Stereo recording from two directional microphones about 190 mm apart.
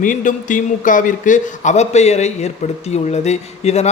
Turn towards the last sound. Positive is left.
turn(degrees=35)  # may be behind; listen again after turning